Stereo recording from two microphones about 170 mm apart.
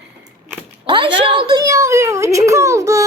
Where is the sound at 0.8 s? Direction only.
30° right (ahead or behind).